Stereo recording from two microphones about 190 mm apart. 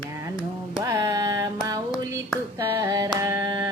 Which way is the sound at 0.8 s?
20° right (ahead or behind).